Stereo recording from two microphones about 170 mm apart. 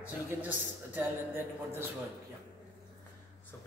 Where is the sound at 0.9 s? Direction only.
15° right (ahead or behind).